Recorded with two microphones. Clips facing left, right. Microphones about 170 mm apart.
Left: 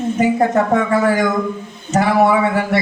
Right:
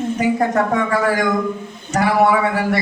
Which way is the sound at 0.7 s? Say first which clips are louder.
Left 3 dB; 25° left (ahead or behind).